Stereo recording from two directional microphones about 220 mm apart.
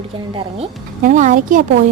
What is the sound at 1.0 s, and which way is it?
Speech, 35° right (ahead or behind).